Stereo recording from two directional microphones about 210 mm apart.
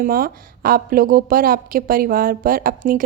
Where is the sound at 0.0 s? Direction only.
45° right (ahead or behind).